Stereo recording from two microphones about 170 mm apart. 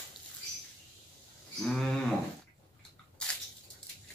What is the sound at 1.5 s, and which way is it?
Speech, 5° left (ahead or behind).